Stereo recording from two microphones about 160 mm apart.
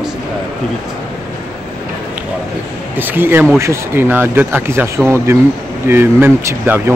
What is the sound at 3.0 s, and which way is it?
Speech, 15° right (ahead or behind).